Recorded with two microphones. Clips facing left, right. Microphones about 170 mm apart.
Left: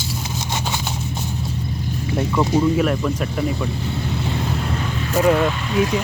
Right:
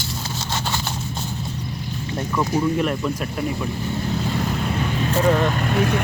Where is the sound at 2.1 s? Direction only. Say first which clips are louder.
Left 4 dB; 20° left (ahead or behind).